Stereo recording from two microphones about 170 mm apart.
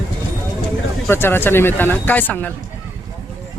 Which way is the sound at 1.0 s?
15° left (ahead or behind).